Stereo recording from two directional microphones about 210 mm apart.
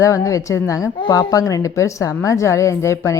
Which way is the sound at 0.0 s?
15° left (ahead or behind).